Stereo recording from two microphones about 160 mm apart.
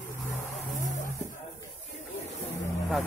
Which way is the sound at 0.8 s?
50° left (ahead or behind).